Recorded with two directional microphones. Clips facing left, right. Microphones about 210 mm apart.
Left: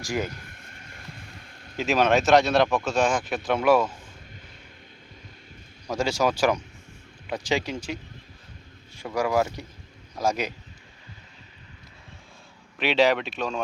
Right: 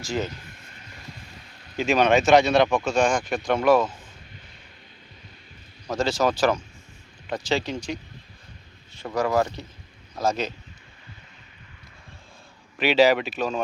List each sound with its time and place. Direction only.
0.0 s speech: 15° left (ahead or behind)
0.4 s vehicle: 50° left (ahead or behind)
1.7 s speech: centre (ahead or behind)
5.9 s speech: 10° left (ahead or behind)
9.0 s speech: 10° left (ahead or behind)
12.8 s speech: centre (ahead or behind)